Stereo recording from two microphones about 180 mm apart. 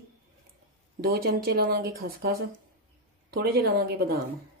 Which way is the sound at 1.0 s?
55° right (ahead or behind).